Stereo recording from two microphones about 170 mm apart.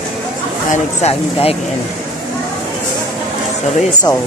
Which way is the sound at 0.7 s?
35° left (ahead or behind).